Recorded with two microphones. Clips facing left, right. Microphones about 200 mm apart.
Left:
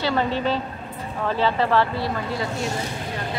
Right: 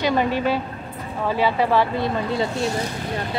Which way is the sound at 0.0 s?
15° right (ahead or behind).